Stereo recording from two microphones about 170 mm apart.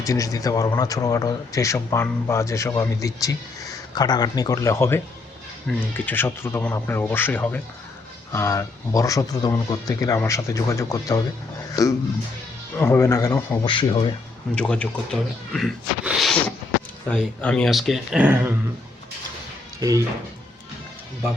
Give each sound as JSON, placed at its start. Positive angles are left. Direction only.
{"t": 0.0, "sound": "speech", "side_deg": 20}
{"t": 11.7, "sound": "a sound", "side_deg": 20}
{"t": 12.7, "sound": "speech", "side_deg": 15}
{"t": 14.5, "sound": "speech", "side_deg": 5}